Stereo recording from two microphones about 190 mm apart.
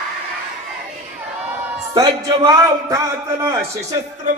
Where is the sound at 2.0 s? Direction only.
20° right (ahead or behind).